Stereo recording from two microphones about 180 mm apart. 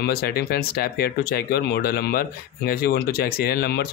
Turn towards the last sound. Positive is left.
turn(degrees=60)  # may be behind; listen again after turning